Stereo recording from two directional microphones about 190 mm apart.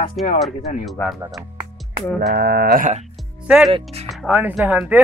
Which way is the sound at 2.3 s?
55° right (ahead or behind).